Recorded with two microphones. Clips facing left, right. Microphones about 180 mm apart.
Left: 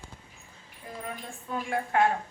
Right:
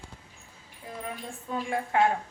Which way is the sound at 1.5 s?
15° right (ahead or behind).